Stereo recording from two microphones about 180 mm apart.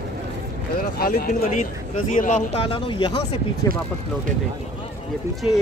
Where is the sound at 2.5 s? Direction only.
30° left (ahead or behind).